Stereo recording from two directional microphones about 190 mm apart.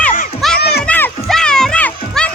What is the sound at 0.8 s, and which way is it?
Children playing, 5° left (ahead or behind).